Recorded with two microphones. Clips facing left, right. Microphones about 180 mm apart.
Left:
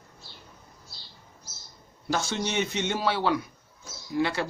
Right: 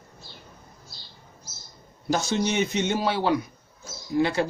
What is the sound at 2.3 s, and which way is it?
Speech, 15° right (ahead or behind).